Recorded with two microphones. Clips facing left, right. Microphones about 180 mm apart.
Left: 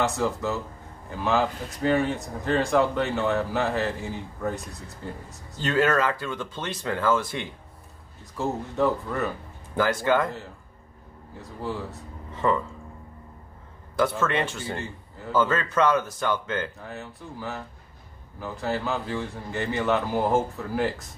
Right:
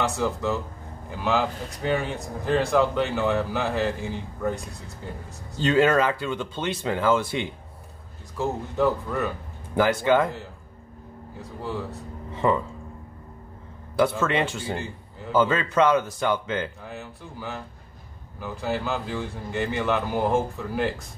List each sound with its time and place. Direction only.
0.0 s speech: centre (ahead or behind)
5.6 s speech: 20° right (ahead or behind)
6.8 s speech: 15° right (ahead or behind)
7.2 s speech: 25° right (ahead or behind)
8.4 s speech: centre (ahead or behind)
9.8 s speech: 15° right (ahead or behind)
12.4 s speech: 15° right (ahead or behind)
13.9 s speech: 10° right (ahead or behind)
15.5 s speech: 15° right (ahead or behind)
16.8 s speech: centre (ahead or behind)